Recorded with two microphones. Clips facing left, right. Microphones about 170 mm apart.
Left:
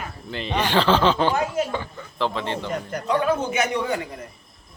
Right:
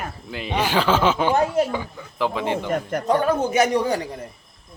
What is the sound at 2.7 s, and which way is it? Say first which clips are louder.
A man's voice: right 3 dB; 45° right (ahead or behind).